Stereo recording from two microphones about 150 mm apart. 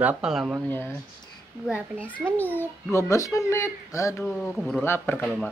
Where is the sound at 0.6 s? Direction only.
15° left (ahead or behind).